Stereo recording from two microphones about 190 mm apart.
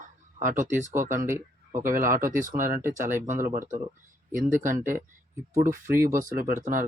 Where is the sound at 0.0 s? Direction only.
45° right (ahead or behind).